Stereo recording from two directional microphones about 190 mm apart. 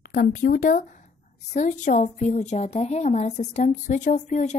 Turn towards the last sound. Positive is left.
turn(degrees=40)  # may be behind; listen again after turning